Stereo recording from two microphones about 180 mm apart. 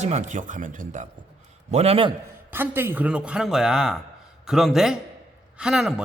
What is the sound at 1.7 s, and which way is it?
Speech, 35° right (ahead or behind).